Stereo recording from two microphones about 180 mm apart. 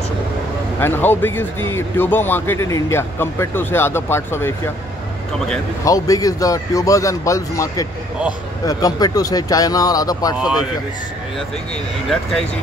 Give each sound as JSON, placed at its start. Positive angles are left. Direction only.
{"t": 0.7, "sound": "speech", "side_deg": 10}
{"t": 5.9, "sound": "a man's voice", "side_deg": 20}
{"t": 11.7, "sound": "speech", "side_deg": 5}